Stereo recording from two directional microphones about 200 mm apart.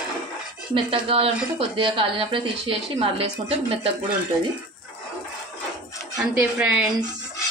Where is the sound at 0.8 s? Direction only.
30° right (ahead or behind).